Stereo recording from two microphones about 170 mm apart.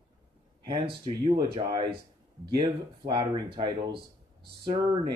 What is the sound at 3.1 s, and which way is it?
Speech, 25° right (ahead or behind).